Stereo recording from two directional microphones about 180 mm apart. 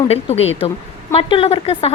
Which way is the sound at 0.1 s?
35° left (ahead or behind).